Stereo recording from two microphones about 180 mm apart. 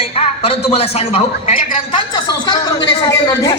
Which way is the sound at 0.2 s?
35° left (ahead or behind).